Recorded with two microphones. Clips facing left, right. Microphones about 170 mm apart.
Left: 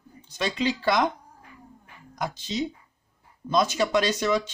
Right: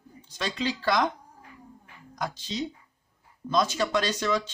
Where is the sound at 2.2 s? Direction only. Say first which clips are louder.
Left 3 dB; 15° left (ahead or behind).